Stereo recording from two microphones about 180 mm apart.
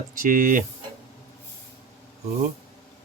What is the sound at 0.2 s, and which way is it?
Speech, 50° right (ahead or behind).